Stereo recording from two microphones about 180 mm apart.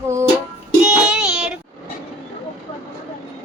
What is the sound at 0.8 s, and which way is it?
Child singing, 5° right (ahead or behind).